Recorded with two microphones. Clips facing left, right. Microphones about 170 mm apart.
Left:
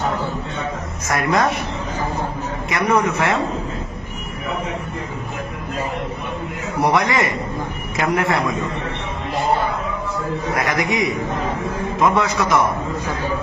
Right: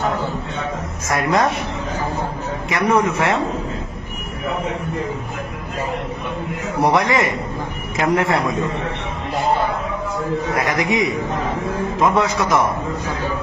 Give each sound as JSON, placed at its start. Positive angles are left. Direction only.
{"t": 1.2, "sound": "a man's voice", "side_deg": -30}
{"t": 2.7, "sound": "a man's voice", "side_deg": 0}
{"t": 6.8, "sound": "a man's voice", "side_deg": -30}
{"t": 10.6, "sound": "a man's voice", "side_deg": -25}
{"t": 11.9, "sound": "a man's voice", "side_deg": 0}